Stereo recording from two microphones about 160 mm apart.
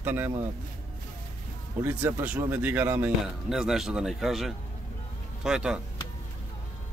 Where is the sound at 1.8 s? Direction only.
10° right (ahead or behind).